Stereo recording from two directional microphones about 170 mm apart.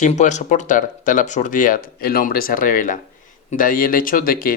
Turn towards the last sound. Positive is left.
turn(degrees=60)  # may be behind; listen again after turning